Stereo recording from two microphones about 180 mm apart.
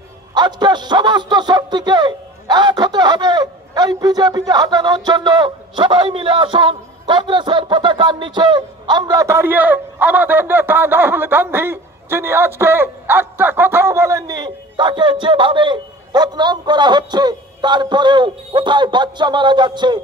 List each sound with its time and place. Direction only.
0.3 s speech: 25° right (ahead or behind)